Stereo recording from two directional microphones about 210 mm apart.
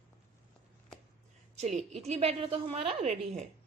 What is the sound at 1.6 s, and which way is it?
A woman's voice, 35° right (ahead or behind).